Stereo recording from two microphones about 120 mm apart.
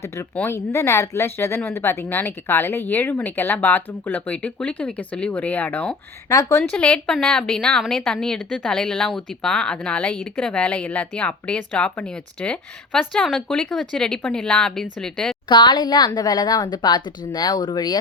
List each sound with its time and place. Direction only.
0.3 s a woman's voice: 20° left (ahead or behind)
6.2 s speech: 30° left (ahead or behind)
6.6 s a woman's voice: 10° left (ahead or behind)
15.4 s speech: 40° left (ahead or behind)